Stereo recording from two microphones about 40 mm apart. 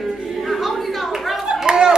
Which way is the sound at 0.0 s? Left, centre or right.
Centre.